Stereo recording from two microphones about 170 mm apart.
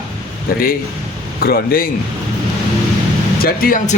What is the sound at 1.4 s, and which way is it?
Speech, 60° left (ahead or behind).